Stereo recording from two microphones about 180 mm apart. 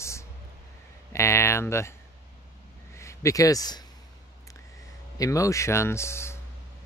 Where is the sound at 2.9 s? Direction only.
15° left (ahead or behind).